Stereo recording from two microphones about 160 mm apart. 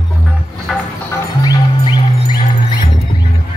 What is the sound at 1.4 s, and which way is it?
Music, 25° left (ahead or behind).